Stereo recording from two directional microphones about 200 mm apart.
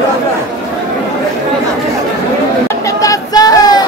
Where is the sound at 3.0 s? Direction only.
20° left (ahead or behind).